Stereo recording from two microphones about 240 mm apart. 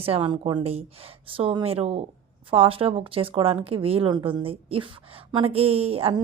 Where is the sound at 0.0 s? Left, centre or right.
Right.